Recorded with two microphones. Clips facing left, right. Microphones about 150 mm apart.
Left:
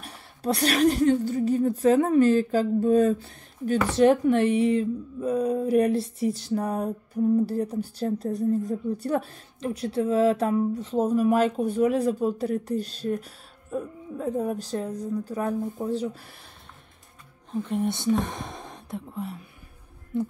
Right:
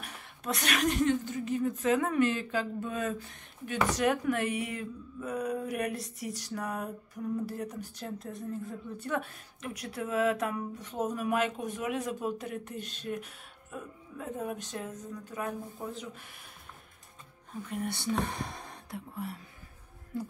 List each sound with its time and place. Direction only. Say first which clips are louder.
0.0 s a woman's voice: left 9 dB; 35° left (ahead or behind)
17.8 s speech: left 5 dB; 20° left (ahead or behind)